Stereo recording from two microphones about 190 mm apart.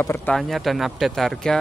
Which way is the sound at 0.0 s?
10° left (ahead or behind).